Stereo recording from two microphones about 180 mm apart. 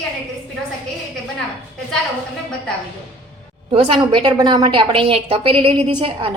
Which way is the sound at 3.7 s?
30° right (ahead or behind).